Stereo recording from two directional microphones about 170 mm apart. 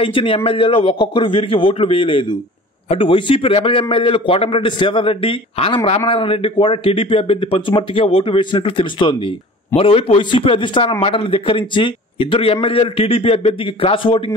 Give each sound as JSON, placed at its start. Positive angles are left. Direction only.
{"t": 0.0, "sound": "a man's voice", "side_deg": 30}